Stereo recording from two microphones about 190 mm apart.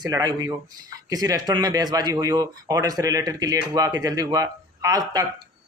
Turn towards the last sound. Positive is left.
turn(degrees=-20)  # may be behind; listen again after turning